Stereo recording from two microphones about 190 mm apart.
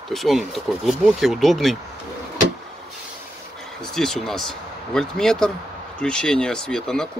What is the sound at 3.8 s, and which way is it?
Speech, centre (ahead or behind).